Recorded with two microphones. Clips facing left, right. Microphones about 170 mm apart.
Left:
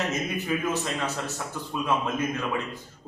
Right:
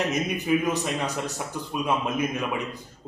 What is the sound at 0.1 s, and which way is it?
A man's voice, 15° right (ahead or behind).